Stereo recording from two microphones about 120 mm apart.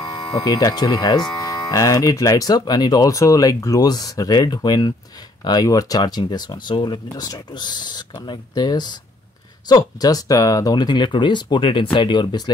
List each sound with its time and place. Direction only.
0.0 s speech: 30° left (ahead or behind)